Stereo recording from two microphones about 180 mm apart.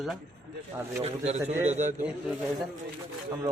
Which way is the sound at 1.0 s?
35° right (ahead or behind).